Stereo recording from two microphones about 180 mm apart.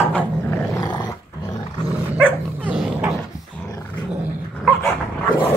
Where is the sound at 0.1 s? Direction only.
10° left (ahead or behind).